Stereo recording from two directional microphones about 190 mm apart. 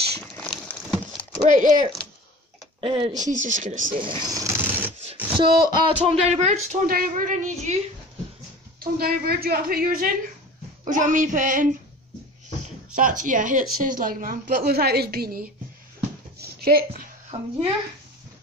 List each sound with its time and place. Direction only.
0.2 s a sound: 5° left (ahead or behind)
1.4 s speech: 45° right (ahead or behind)
2.8 s speech: 30° right (ahead or behind)
3.3 s speech: 40° right (ahead or behind)
4.0 s a sound: 25° right (ahead or behind)
5.4 s speech: 25° right (ahead or behind); by 7.7 s 40° right (ahead or behind)
8.7 s speech: 55° right (ahead or behind)
12.9 s speech: 45° right (ahead or behind)
16.3 s dog: 55° right (ahead or behind)
17.3 s speech: 35° right (ahead or behind)